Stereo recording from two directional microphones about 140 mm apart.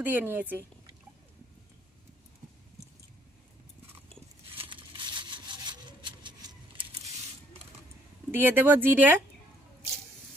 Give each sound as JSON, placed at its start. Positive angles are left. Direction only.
{"t": 0.0, "sound": "speech", "side_deg": -15}
{"t": 4.5, "sound": "a sound", "side_deg": -35}
{"t": 8.3, "sound": "speech", "side_deg": -15}